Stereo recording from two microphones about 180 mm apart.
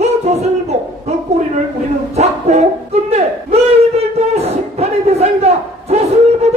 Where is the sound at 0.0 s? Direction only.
35° right (ahead or behind).